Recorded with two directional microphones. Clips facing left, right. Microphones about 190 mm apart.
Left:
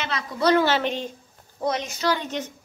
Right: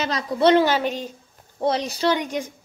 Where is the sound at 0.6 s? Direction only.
10° right (ahead or behind).